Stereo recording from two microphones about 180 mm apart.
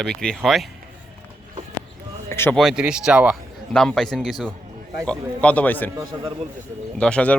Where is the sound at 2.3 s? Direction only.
15° left (ahead or behind).